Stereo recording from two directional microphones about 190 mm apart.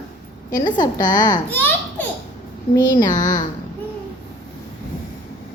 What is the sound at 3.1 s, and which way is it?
Speech, 40° left (ahead or behind).